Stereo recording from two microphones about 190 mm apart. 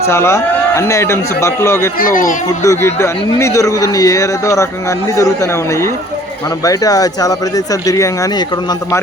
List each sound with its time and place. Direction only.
0.1 s a man's voice: 15° left (ahead or behind)
2.0 s speech: 45° left (ahead or behind)
2.6 s a man's voice: 15° left (ahead or behind)